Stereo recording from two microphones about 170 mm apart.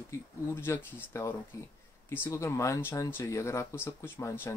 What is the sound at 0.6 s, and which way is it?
Speech, 15° left (ahead or behind).